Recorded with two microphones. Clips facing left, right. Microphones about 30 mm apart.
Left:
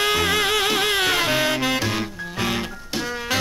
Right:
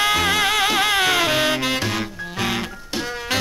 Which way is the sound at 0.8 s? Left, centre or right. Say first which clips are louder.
Right 2 dB; right.